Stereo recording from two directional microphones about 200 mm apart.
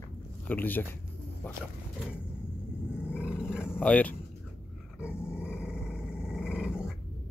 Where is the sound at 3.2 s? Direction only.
5° right (ahead or behind).